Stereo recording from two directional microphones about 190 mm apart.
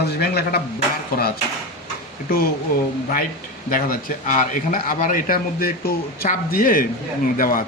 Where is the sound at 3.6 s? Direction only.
50° left (ahead or behind).